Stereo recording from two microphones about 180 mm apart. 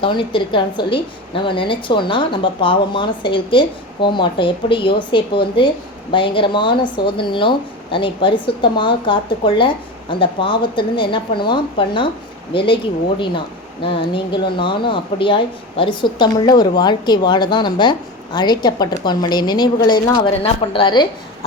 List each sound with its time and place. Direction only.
0.0 s a woman's voice: 30° left (ahead or behind)